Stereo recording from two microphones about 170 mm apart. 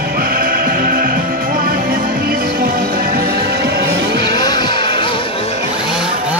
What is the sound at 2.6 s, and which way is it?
Music, 60° right (ahead or behind).